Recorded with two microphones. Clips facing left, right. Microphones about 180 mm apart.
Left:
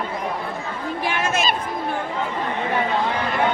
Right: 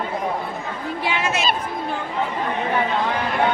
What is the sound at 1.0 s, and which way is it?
Chatter, 50° left (ahead or behind).